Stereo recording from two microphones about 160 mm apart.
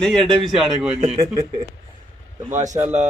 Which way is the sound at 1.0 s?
35° right (ahead or behind).